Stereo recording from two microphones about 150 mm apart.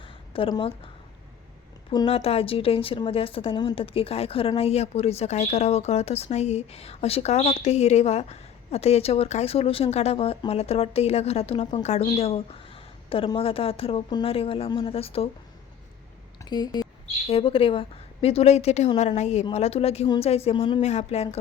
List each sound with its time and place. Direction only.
0.0 s a sound: 35° left (ahead or behind)
2.0 s a woman's voice: 40° left (ahead or behind)
16.4 s speech: 30° left (ahead or behind)
17.2 s a woman's voice: 40° left (ahead or behind)